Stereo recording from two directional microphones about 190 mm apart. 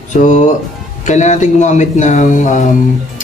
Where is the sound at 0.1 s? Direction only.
40° left (ahead or behind).